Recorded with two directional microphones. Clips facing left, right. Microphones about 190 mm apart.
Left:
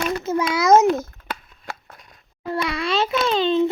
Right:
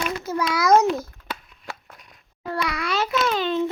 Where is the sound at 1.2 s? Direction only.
50° left (ahead or behind).